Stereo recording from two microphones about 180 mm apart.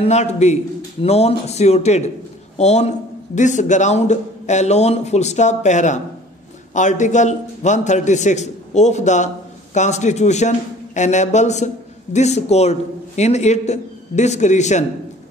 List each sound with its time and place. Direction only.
0.0 s a man's voice: 35° left (ahead or behind)